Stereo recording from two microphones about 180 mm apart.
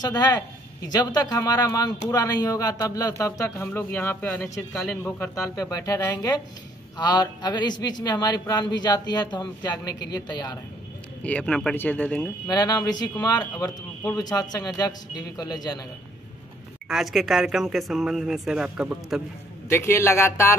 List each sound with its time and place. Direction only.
0.0 s speech: 20° left (ahead or behind)
11.2 s speech: 5° left (ahead or behind)
12.4 s speech: 20° left (ahead or behind)
16.9 s speech: centre (ahead or behind)
19.7 s speech: 15° left (ahead or behind)